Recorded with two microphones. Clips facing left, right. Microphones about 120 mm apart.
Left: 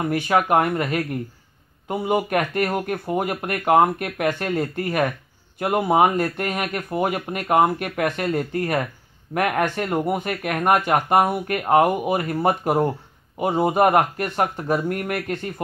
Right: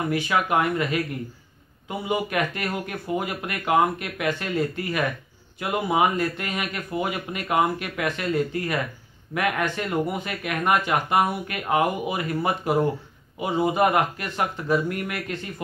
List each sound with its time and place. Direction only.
0.1 s speech: 50° left (ahead or behind)